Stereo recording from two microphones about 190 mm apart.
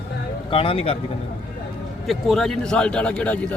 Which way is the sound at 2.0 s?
Centre (ahead or behind).